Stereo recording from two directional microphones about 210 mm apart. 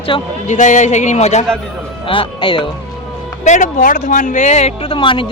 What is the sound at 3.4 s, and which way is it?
Speech, 35° left (ahead or behind).